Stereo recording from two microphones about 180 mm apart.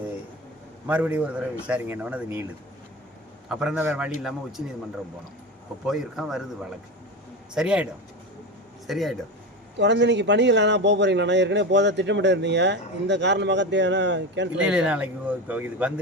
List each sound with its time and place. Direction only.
0.9 s speech: 10° right (ahead or behind)
3.5 s speech: 5° right (ahead or behind)
5.8 s speech: centre (ahead or behind)
8.9 s speech: centre (ahead or behind)
9.7 s a man's voice: 75° right (ahead or behind)
14.6 s speech: 5° right (ahead or behind)